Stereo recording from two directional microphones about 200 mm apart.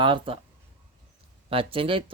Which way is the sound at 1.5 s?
30° right (ahead or behind).